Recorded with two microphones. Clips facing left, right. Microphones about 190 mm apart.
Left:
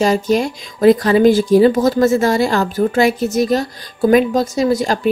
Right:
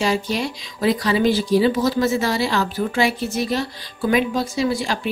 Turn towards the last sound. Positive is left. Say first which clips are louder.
# left 6 dB
turn(degrees=45)  # may be behind; listen again after turning